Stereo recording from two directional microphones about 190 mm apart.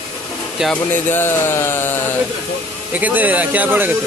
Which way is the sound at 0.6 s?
5° right (ahead or behind).